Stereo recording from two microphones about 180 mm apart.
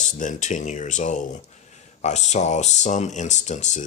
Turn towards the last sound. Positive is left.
turn(degrees=40)  # may be behind; listen again after turning